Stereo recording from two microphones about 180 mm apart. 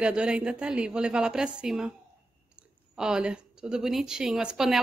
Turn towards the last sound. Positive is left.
turn(degrees=-5)  # may be behind; listen again after turning